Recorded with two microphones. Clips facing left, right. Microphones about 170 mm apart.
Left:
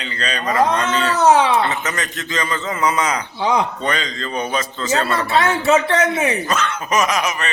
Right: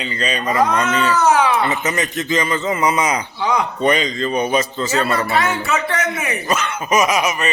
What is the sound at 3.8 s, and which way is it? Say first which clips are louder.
A man's voice: right 6 dB; 15° right (ahead or behind).